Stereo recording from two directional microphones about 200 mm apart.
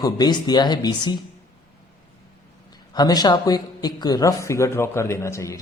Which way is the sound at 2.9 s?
20° left (ahead or behind).